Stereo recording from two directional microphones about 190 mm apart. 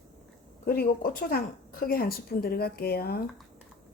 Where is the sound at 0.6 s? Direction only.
50° left (ahead or behind).